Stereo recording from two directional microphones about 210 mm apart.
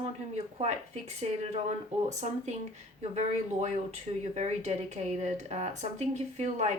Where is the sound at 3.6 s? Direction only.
35° right (ahead or behind).